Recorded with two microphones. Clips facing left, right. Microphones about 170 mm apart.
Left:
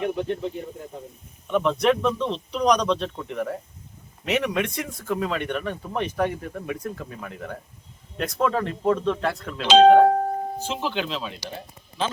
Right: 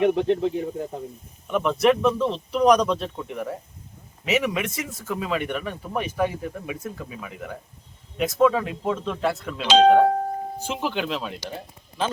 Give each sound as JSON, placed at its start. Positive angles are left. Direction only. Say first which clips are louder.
{"t": 0.0, "sound": "speech", "louder": "right 6 dB", "side_deg": -75}
{"t": 1.5, "sound": "speech", "louder": "right 1 dB", "side_deg": -5}
{"t": 10.6, "sound": "speech", "louder": "right 1 dB", "side_deg": -10}